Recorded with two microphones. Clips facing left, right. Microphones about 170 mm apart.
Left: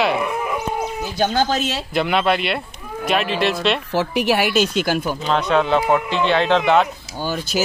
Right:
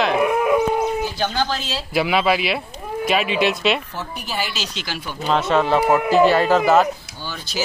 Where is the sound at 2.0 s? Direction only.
5° right (ahead or behind).